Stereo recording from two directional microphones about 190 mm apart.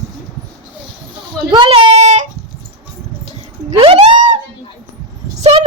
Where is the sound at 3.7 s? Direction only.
30° right (ahead or behind).